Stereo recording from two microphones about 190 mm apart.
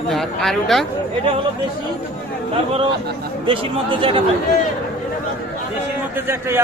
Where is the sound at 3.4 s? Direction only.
25° right (ahead or behind).